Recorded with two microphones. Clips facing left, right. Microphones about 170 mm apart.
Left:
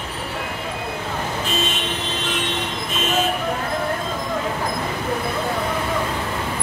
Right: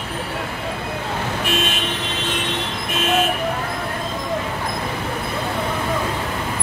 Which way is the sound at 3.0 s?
65° right (ahead or behind).